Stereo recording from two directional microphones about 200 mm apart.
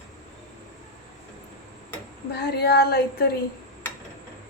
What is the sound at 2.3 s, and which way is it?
Speech, 50° left (ahead or behind).